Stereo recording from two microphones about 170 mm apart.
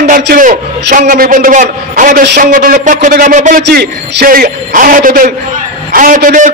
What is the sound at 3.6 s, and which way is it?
A man's voice, 75° right (ahead or behind).